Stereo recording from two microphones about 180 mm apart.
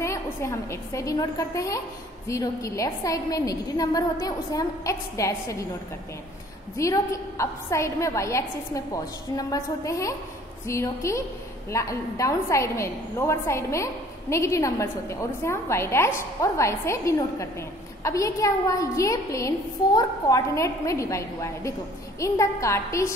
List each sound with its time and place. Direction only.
0.0 s a woman's voice: 15° left (ahead or behind)
6.8 s a woman's voice: 15° left (ahead or behind)